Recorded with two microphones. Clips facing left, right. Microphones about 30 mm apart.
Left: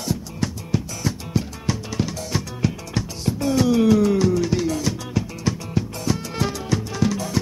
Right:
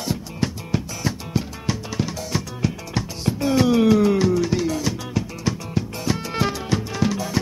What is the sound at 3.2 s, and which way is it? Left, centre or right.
Music, centre.